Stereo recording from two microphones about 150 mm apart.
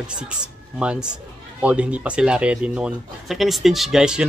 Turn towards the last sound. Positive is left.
turn(degrees=-5)  # may be behind; listen again after turning